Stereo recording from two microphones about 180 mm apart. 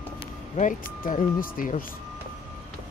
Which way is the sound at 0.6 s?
45° left (ahead or behind).